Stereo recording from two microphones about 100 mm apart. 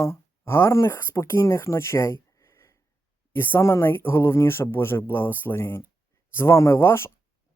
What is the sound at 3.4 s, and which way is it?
Speech, 25° left (ahead or behind).